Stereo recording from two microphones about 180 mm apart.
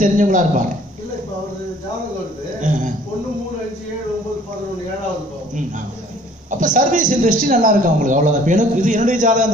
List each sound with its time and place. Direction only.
0.0 s a man's voice: 45° right (ahead or behind)
2.7 s a sound: 45° right (ahead or behind)
6.5 s a man's voice: 45° right (ahead or behind)